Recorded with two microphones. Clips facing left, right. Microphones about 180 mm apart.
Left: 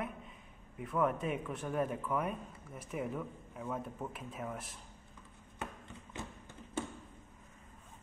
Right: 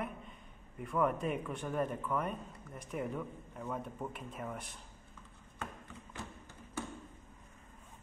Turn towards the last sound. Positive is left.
turn(degrees=20)  # may be behind; listen again after turning